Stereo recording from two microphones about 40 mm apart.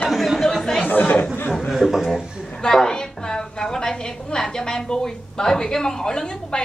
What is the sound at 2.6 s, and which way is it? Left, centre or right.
A woman's voice, centre.